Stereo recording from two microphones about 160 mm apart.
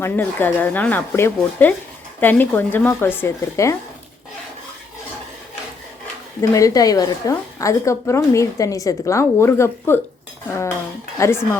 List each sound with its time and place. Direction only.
0.0 s speech: 10° left (ahead or behind)
6.5 s a woman's voice: 20° left (ahead or behind)
11.2 s speech: 15° left (ahead or behind)